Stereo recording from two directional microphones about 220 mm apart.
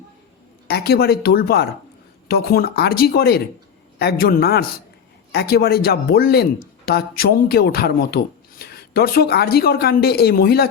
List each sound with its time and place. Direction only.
0.7 s speech: 45° left (ahead or behind)